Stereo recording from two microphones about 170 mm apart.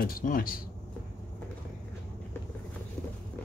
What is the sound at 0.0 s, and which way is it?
Speech, 55° left (ahead or behind).